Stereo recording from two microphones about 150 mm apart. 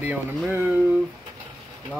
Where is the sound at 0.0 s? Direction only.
10° right (ahead or behind).